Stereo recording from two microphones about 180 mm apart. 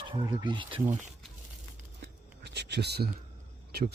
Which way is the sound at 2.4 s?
70° right (ahead or behind).